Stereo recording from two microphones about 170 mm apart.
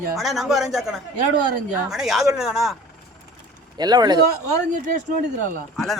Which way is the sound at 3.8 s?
25° right (ahead or behind).